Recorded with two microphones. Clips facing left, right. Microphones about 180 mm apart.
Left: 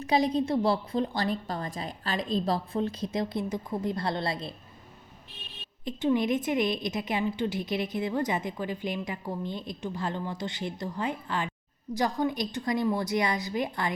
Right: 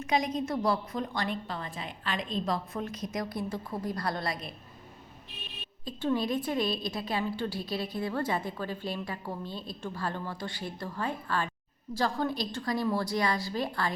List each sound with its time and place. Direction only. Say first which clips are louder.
0.0 s a woman's voice: left 4 dB; 35° left (ahead or behind)
5.8 s a woman's voice: left 4 dB; 20° left (ahead or behind)